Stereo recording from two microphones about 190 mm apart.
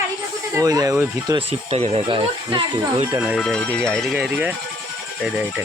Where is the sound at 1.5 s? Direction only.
30° right (ahead or behind).